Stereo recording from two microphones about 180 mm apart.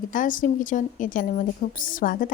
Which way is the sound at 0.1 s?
50° left (ahead or behind).